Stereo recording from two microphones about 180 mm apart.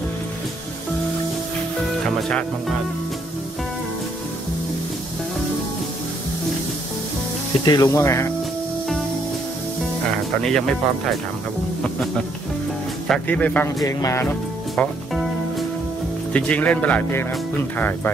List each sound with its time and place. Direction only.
2.0 s music: 5° left (ahead or behind)
7.6 s speech: 20° left (ahead or behind)
10.1 s music: 5° left (ahead or behind)
13.1 s speech: 10° left (ahead or behind)
14.8 s speech: 5° left (ahead or behind)
16.3 s speech: 5° left (ahead or behind)